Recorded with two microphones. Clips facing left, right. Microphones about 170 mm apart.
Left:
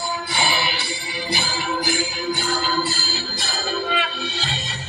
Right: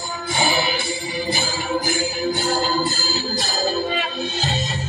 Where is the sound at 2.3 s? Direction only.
45° right (ahead or behind).